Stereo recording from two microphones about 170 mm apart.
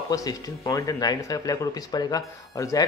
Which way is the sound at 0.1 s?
20° left (ahead or behind).